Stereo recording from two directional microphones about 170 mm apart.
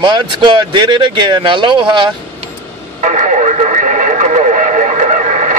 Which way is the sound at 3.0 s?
45° right (ahead or behind).